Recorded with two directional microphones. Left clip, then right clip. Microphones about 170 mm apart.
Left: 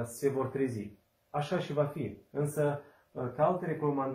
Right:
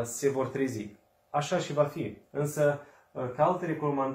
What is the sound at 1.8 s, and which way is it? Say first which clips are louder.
Speech: right 4 dB; 15° right (ahead or behind).